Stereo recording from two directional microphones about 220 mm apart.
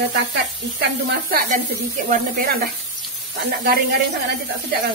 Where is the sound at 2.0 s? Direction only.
40° right (ahead or behind).